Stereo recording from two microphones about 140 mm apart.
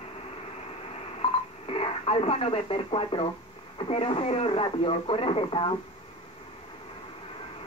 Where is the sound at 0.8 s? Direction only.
45° left (ahead or behind).